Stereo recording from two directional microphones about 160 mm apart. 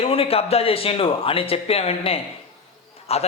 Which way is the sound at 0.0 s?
35° left (ahead or behind).